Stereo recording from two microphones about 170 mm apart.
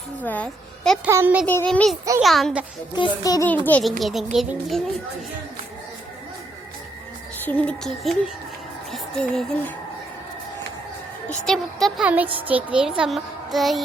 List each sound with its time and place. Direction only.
0.2 s a woman's voice: 10° left (ahead or behind)
1.0 s a child's voice: 10° right (ahead or behind)
1.5 s a child's voice: 10° left (ahead or behind)
2.9 s music: 25° left (ahead or behind)
3.7 s a child's voice: 5° left (ahead or behind)
7.4 s speech: 10° left (ahead or behind)
8.9 s music: 5° left (ahead or behind)
11.4 s speech: centre (ahead or behind)
12.0 s a child's voice: 10° right (ahead or behind)
13.0 s child singing: centre (ahead or behind)